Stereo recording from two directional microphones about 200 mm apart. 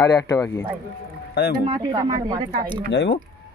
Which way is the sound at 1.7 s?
20° right (ahead or behind).